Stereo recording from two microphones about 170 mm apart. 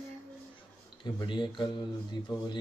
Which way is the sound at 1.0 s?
25° left (ahead or behind).